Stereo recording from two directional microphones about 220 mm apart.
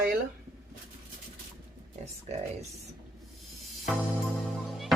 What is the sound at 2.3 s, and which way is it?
Speech, 30° right (ahead or behind).